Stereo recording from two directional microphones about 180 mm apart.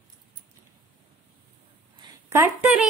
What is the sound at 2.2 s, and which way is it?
Speech, 10° right (ahead or behind).